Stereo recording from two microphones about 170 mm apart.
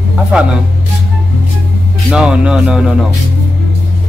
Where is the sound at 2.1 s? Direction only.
5° right (ahead or behind).